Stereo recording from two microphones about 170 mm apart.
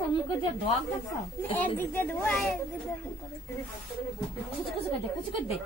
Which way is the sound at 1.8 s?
15° left (ahead or behind).